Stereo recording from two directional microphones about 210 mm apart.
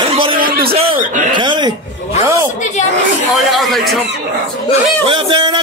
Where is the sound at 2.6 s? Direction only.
35° left (ahead or behind).